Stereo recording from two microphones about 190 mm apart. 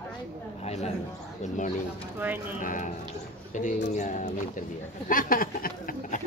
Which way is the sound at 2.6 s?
45° left (ahead or behind).